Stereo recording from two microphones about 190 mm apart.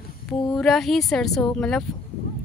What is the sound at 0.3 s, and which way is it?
Speech, centre (ahead or behind).